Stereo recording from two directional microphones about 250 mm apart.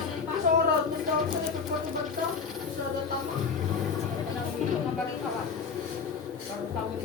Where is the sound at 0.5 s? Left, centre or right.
Right.